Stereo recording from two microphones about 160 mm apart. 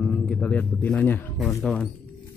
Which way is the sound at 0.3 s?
10° left (ahead or behind).